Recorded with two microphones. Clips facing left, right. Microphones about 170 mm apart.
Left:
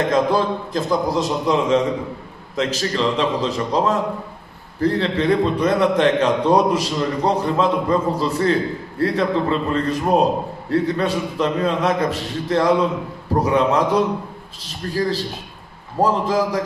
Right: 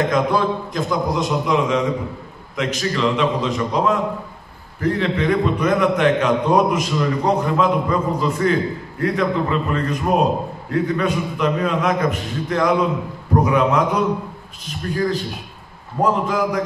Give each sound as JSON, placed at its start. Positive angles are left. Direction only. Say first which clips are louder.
{"t": 0.1, "sound": "a man's voice", "louder": "left 1 dB", "side_deg": 30}